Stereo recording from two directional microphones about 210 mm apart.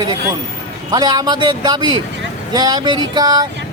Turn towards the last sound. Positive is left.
turn(degrees=-20)  # may be behind; listen again after turning